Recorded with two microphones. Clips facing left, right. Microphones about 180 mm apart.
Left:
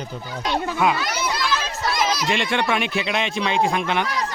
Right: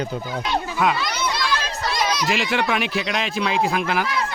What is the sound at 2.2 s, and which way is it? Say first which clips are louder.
Speech: even; 5° right (ahead or behind).